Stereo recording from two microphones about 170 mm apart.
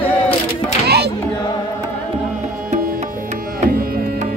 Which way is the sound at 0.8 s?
70° right (ahead or behind).